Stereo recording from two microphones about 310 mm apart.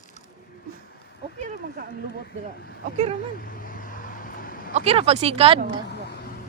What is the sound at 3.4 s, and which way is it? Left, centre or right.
Vehicle, left.